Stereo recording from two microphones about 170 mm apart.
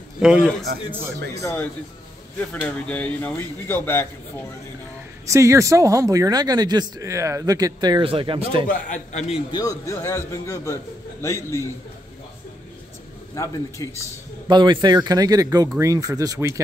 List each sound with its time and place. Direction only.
0.2 s a man's voice: 5° right (ahead or behind)
1.4 s a man's voice: 15° left (ahead or behind)
2.9 s a man's voice: 10° left (ahead or behind)
5.2 s speech: 15° right (ahead or behind); by 8.6 s 30° right (ahead or behind)
8.6 s a man's voice: 45° left (ahead or behind)
9.5 s a man's voice: 20° left (ahead or behind)
13.3 s a man's voice: 20° left (ahead or behind)
14.5 s speech: 25° right (ahead or behind)